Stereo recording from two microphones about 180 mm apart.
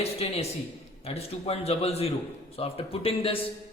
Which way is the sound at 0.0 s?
35° left (ahead or behind).